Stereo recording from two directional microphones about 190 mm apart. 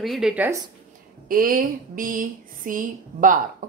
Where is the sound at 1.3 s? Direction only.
50° right (ahead or behind).